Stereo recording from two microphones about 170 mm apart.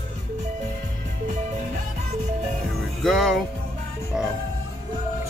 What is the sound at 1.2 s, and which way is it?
Music, 45° right (ahead or behind).